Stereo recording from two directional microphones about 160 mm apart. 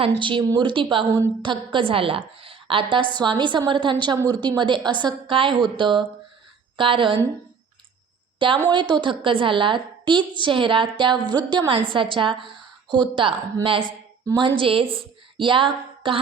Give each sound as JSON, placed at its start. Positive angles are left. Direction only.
{"t": 0.2, "sound": "a woman's voice", "side_deg": -30}
{"t": 8.7, "sound": "a woman's voice", "side_deg": -30}